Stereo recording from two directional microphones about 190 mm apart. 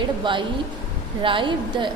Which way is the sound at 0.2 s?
25° right (ahead or behind).